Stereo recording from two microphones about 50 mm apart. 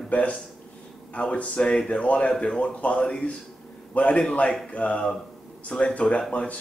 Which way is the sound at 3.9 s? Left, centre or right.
Left.